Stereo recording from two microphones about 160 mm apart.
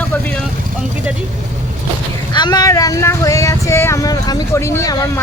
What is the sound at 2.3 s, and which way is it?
Speech, 25° left (ahead or behind).